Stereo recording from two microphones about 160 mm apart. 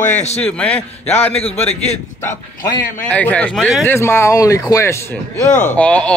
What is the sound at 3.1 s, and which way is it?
A man's voice, 10° left (ahead or behind).